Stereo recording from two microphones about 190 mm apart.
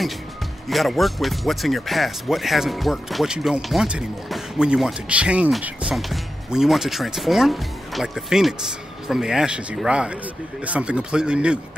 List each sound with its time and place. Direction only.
0.7 s speech: centre (ahead or behind)